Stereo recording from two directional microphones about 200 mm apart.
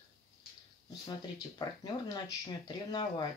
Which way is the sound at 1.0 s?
20° left (ahead or behind).